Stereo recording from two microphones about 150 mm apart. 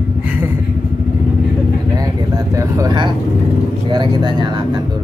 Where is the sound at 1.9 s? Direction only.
25° right (ahead or behind).